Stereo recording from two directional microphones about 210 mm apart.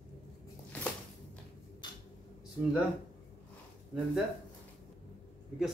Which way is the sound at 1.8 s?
20° left (ahead or behind).